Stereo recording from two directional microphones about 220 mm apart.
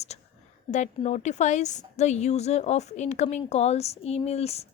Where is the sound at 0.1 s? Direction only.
30° left (ahead or behind).